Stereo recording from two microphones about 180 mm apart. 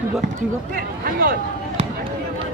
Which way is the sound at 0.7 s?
55° right (ahead or behind).